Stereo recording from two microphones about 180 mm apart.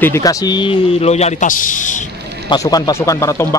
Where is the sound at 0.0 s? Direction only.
15° left (ahead or behind); by 2.0 s 45° left (ahead or behind).